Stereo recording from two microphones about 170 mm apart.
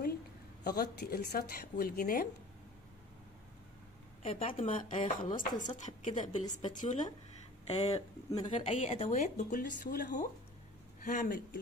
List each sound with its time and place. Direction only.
0.7 s speech: 65° left (ahead or behind)
4.2 s speech: 35° left (ahead or behind)
4.9 s speech: 50° left (ahead or behind)
8.3 s speech: 25° left (ahead or behind)
8.6 s speech: 40° left (ahead or behind)